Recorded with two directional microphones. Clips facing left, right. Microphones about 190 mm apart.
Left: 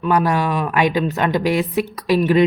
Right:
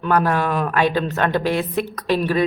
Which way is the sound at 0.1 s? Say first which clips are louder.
Left 1 dB; 10° left (ahead or behind).